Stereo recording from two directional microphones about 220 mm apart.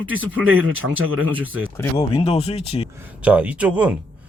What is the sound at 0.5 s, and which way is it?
Speech, 70° right (ahead or behind).